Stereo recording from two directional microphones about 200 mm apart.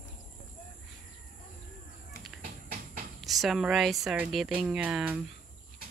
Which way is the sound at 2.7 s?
45° right (ahead or behind).